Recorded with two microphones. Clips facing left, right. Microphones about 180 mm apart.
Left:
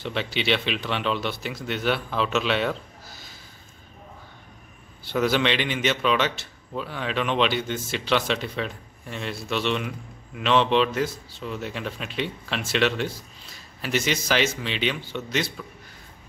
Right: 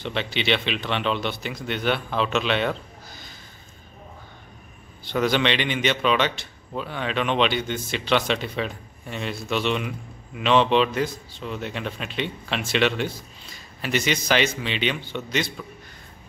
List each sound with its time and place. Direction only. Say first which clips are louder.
0.0 s a man's voice: even; 5° left (ahead or behind)
5.0 s a man's voice: right 1 dB; 5° left (ahead or behind)